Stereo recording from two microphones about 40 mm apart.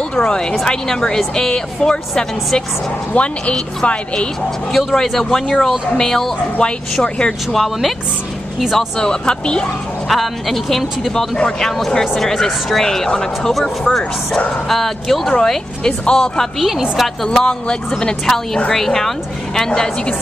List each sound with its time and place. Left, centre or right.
0.1 s speech: left
3.1 s speech: left
4.7 s speech: centre
6.6 s speech: left
7.5 s speech: centre
8.7 s speech: centre
10.0 s speech: centre
12.2 s speech: centre
12.8 s speech: centre
14.7 s speech: centre
16.5 s speech: centre
17.3 s speech: left